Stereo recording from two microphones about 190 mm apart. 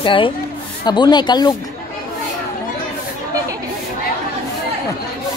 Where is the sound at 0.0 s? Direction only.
25° left (ahead or behind).